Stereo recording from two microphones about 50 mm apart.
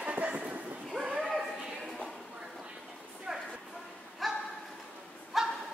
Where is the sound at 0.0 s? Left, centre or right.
Right.